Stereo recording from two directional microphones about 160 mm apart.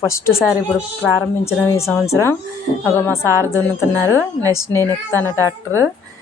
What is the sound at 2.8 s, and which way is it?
A woman's voice, 15° left (ahead or behind).